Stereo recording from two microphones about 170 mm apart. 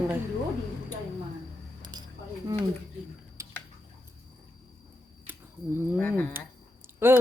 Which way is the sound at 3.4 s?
20° right (ahead or behind).